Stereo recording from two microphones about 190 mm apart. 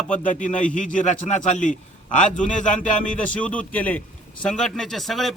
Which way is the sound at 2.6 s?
40° left (ahead or behind).